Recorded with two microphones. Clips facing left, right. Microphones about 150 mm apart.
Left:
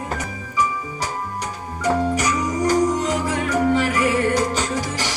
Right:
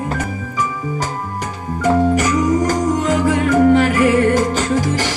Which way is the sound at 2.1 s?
45° right (ahead or behind).